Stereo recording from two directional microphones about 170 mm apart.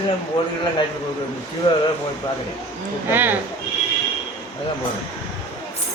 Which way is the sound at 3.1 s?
10° right (ahead or behind).